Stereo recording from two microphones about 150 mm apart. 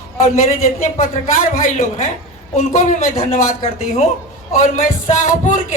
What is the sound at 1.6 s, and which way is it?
A woman's voice, 55° left (ahead or behind).